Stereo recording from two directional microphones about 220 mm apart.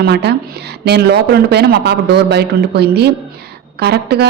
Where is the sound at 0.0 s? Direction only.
50° right (ahead or behind).